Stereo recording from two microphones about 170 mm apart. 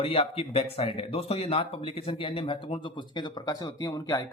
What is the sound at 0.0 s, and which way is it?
Speech, 35° left (ahead or behind).